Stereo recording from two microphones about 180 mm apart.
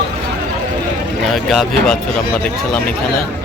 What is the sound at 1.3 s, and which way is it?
Speech, centre (ahead or behind).